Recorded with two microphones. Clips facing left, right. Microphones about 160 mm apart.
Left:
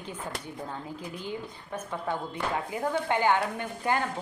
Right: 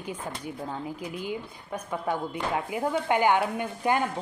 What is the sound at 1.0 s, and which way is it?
Speech, 10° right (ahead or behind).